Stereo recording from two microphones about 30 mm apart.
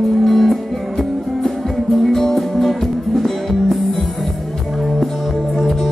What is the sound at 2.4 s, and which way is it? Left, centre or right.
Music, centre.